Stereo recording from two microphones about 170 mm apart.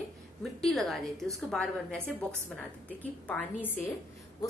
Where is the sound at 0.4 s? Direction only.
Centre (ahead or behind).